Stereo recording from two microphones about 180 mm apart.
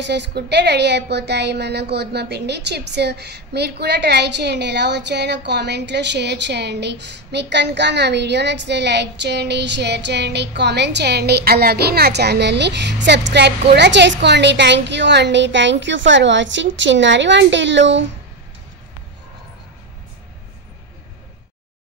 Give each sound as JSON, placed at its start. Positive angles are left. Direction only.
{"t": 0.0, "sound": "a woman's voice", "side_deg": -75}